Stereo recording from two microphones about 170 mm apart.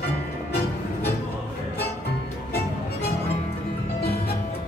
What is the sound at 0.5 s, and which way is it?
Music, 70° left (ahead or behind).